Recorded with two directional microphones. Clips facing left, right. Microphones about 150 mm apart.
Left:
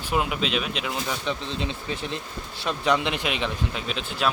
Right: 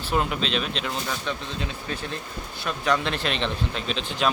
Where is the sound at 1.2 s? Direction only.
20° left (ahead or behind).